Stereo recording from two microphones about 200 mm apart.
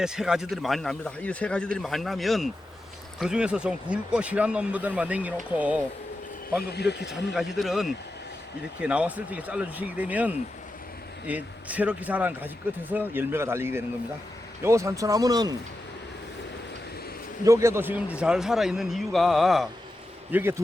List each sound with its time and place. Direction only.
0.0 s speech: 5° right (ahead or behind)
6.6 s speech: 55° left (ahead or behind)
7.3 s speech: centre (ahead or behind); by 15.5 s 20° right (ahead or behind)
17.4 s speech: 15° right (ahead or behind)
20.3 s speech: 10° right (ahead or behind)